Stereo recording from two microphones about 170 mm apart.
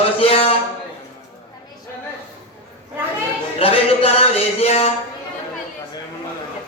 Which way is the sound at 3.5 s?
35° left (ahead or behind).